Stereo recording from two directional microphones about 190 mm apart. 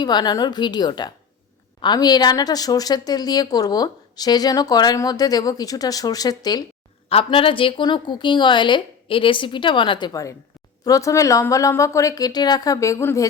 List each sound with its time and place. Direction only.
0.0 s a woman's voice: 20° left (ahead or behind)